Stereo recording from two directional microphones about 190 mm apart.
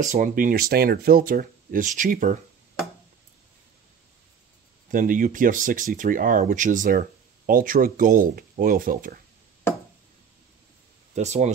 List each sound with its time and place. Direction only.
0.1 s speech: 45° right (ahead or behind)
4.9 s speech: 45° right (ahead or behind)
11.1 s speech: 35° right (ahead or behind)